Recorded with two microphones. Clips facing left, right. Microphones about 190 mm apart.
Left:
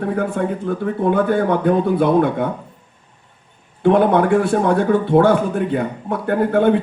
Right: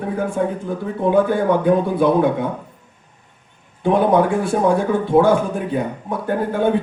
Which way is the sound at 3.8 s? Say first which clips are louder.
Left 1 dB; 60° left (ahead or behind).